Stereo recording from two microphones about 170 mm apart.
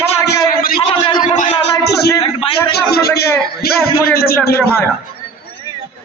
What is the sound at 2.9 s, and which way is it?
A man's voice, 70° left (ahead or behind).